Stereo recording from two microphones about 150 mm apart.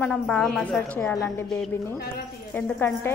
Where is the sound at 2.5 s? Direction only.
10° left (ahead or behind).